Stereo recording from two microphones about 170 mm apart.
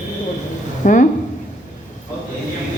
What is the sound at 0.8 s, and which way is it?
Speech, 45° left (ahead or behind).